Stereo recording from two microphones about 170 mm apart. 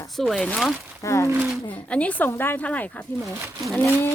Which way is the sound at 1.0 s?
15° left (ahead or behind).